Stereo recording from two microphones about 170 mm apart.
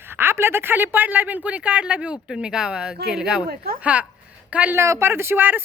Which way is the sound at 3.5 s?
65° right (ahead or behind).